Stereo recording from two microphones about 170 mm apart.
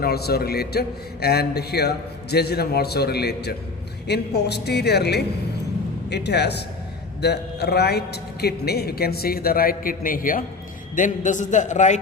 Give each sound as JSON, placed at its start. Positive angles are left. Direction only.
{"t": 0.0, "sound": "a man's voice", "side_deg": 70}